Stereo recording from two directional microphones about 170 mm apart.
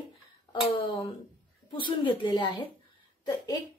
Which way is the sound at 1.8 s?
25° left (ahead or behind).